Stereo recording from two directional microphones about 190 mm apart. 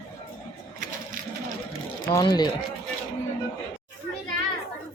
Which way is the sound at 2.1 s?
20° left (ahead or behind).